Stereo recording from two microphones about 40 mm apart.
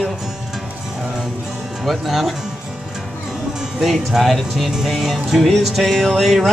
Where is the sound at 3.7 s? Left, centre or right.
Centre.